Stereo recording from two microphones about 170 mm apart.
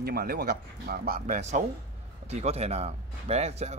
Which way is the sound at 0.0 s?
60° right (ahead or behind).